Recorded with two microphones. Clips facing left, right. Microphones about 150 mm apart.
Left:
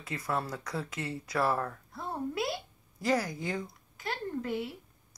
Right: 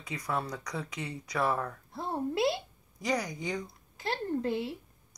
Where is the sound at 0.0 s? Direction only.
5° left (ahead or behind).